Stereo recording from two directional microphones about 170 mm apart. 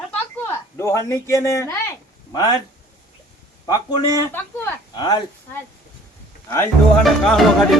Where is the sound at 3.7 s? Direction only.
20° left (ahead or behind).